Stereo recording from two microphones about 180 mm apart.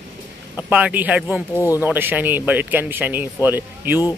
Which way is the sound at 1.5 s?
15° left (ahead or behind).